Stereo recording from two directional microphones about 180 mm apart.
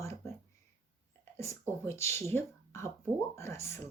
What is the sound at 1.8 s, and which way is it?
Speech, 15° left (ahead or behind).